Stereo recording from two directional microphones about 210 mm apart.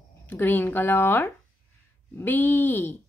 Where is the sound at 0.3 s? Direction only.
10° left (ahead or behind).